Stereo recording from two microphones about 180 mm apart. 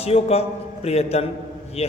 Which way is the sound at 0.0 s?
35° left (ahead or behind).